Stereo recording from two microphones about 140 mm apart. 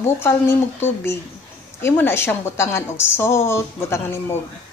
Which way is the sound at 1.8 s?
15° left (ahead or behind).